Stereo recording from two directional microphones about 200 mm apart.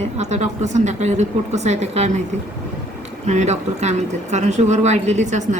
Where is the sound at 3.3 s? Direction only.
35° right (ahead or behind).